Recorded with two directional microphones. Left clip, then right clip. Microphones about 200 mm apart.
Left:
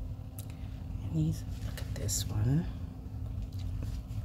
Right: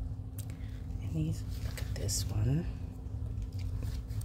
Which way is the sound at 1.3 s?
5° left (ahead or behind).